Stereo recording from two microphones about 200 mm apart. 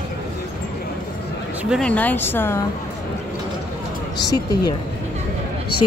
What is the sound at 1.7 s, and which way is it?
Speech, 5° left (ahead or behind).